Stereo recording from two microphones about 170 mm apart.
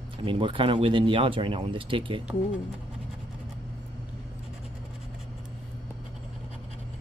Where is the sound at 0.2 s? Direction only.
30° right (ahead or behind).